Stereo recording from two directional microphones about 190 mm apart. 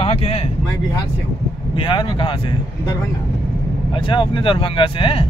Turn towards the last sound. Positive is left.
turn(degrees=25)  # may be behind; listen again after turning